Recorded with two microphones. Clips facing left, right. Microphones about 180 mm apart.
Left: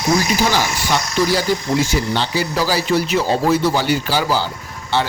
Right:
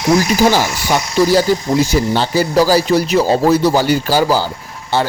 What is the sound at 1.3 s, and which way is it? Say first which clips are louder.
Speech: right 5 dB; 40° right (ahead or behind).